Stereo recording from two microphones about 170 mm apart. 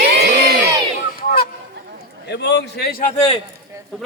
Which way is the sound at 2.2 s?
85° left.